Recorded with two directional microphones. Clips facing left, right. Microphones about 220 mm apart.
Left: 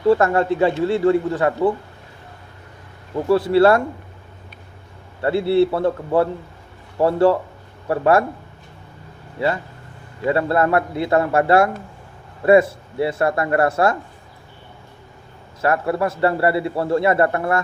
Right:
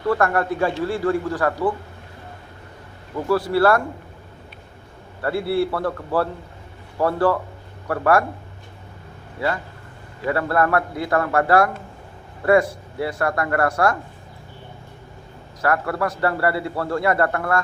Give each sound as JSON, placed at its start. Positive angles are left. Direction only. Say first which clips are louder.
{"t": 0.1, "sound": "a man's voice", "louder": "left 4 dB", "side_deg": 25}
{"t": 3.2, "sound": "a man's voice", "louder": "left 4 dB", "side_deg": 25}
{"t": 5.2, "sound": "a man's voice", "louder": "left 5 dB", "side_deg": 25}
{"t": 9.4, "sound": "a man's voice", "louder": "left 3 dB", "side_deg": 25}
{"t": 15.6, "sound": "a man's voice", "louder": "left 3 dB", "side_deg": 25}